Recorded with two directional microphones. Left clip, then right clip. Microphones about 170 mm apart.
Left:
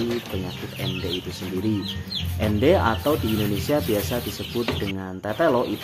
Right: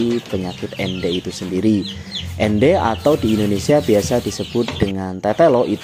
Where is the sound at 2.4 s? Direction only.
35° right (ahead or behind).